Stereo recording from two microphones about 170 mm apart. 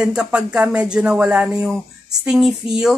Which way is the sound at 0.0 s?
5° right (ahead or behind).